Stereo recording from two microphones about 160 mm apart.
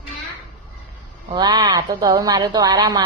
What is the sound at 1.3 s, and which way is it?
Speech, 25° right (ahead or behind).